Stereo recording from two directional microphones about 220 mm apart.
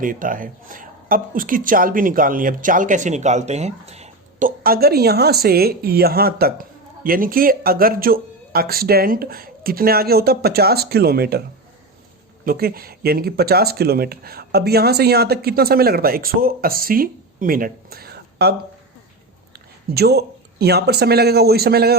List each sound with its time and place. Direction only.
0.0 s speech: 40° right (ahead or behind)
12.5 s speech: 45° right (ahead or behind)
19.9 s speech: 45° right (ahead or behind)